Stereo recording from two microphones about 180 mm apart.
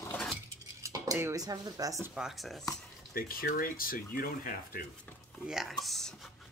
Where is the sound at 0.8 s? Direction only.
20° right (ahead or behind).